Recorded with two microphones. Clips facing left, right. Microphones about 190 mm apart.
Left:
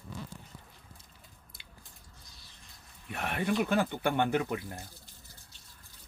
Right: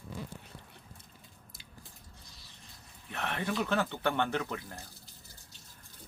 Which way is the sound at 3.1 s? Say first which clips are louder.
Left 3 dB; 10° left (ahead or behind).